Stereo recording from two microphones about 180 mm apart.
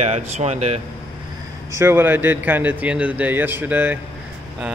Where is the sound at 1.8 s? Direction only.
10° right (ahead or behind).